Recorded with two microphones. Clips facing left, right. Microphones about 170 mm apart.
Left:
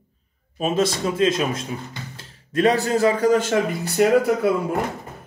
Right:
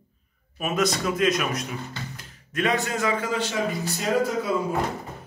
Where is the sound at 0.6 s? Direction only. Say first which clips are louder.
Left 3 dB; 30° left (ahead or behind); by 4.5 s 60° left (ahead or behind).